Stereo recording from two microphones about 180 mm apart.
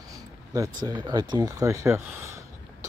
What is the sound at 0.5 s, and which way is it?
Speech, 20° right (ahead or behind).